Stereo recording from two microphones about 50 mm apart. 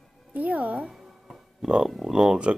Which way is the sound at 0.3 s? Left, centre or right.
Right.